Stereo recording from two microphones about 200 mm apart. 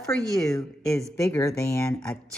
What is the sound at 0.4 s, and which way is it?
A woman's voice, 15° left (ahead or behind).